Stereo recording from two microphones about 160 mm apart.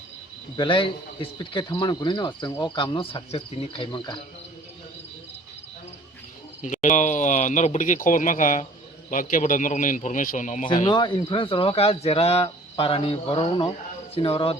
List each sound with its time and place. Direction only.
0.5 s speech: 30° left (ahead or behind)
6.6 s speech: 50° left (ahead or behind)
10.8 s speech: 30° left (ahead or behind)